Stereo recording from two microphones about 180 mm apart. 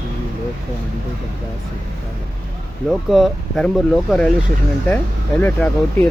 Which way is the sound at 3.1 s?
Centre (ahead or behind).